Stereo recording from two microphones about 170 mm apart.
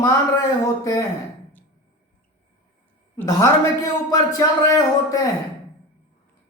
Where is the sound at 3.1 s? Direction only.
15° left (ahead or behind).